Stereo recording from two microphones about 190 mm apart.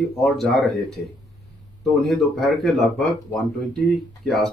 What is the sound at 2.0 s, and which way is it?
Speech, centre (ahead or behind).